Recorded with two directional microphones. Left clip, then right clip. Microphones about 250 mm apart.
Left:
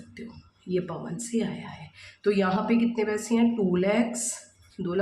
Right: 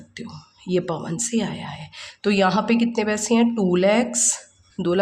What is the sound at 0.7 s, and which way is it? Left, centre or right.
A woman's voice, right.